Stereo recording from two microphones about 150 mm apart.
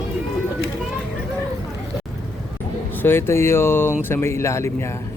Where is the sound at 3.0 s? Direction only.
15° left (ahead or behind).